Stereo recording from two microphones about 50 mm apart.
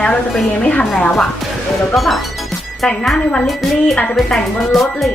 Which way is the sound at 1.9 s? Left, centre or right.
Centre.